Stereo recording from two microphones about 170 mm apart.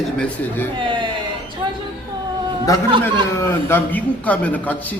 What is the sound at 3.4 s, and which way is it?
A man's voice, 10° left (ahead or behind).